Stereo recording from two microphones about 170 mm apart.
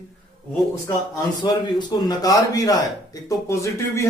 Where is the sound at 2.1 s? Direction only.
20° left (ahead or behind).